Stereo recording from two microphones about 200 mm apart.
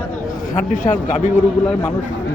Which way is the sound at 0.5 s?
40° left (ahead or behind).